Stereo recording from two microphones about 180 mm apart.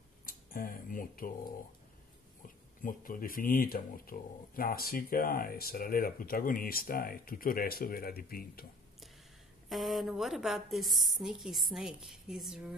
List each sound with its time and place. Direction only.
0.2 s speech: 50° left (ahead or behind)
2.4 s speech: 50° left (ahead or behind)
9.7 s a woman's voice: centre (ahead or behind)